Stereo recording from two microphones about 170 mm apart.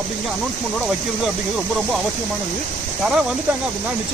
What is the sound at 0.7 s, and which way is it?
Speech, centre (ahead or behind).